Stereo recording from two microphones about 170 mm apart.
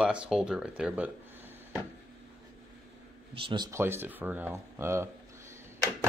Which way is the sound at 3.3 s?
30° right (ahead or behind).